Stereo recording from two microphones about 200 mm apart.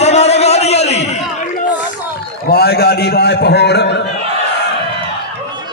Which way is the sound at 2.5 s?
55° left (ahead or behind).